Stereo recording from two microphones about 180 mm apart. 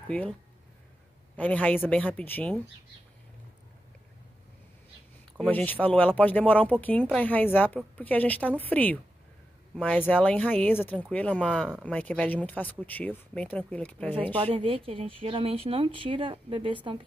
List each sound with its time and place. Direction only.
0.1 s speech: 5° left (ahead or behind)
5.4 s speech: 10° left (ahead or behind)
14.3 s speech: 30° right (ahead or behind)